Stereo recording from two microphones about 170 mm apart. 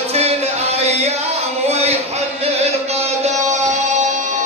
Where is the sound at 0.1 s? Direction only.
40° right (ahead or behind).